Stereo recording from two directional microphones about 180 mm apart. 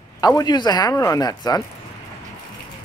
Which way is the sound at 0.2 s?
20° left (ahead or behind).